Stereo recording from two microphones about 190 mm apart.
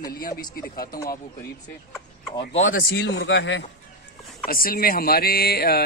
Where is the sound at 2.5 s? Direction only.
85° left; by 3.6 s 70° left (ahead or behind).